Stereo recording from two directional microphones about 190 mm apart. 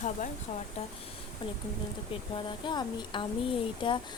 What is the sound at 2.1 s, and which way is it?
Speech, 25° left (ahead or behind).